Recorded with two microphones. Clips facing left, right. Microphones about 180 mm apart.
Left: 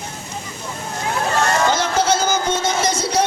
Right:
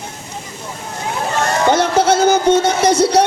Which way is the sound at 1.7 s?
60° right (ahead or behind).